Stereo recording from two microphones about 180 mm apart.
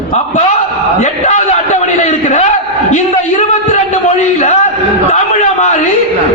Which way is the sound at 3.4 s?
40° left (ahead or behind).